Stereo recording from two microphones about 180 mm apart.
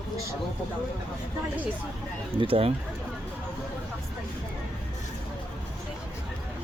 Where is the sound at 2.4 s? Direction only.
30° right (ahead or behind).